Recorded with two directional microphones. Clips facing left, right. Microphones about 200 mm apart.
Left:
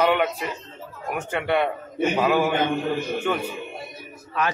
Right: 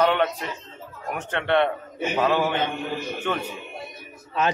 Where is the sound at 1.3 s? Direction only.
10° left (ahead or behind).